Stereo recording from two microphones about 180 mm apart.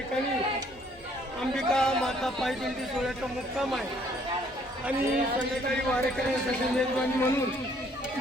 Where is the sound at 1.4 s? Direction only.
5° left (ahead or behind).